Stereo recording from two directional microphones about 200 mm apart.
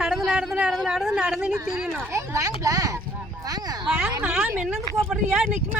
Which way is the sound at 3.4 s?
20° right (ahead or behind).